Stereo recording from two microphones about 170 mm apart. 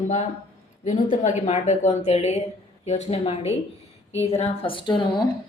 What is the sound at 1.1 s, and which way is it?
A woman's voice, 45° left (ahead or behind).